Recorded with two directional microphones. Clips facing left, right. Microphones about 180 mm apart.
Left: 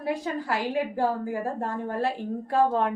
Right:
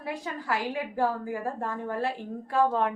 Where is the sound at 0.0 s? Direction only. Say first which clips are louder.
Left 6 dB; 30° left (ahead or behind).